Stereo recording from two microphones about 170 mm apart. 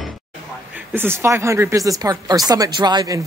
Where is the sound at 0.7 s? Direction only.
15° right (ahead or behind).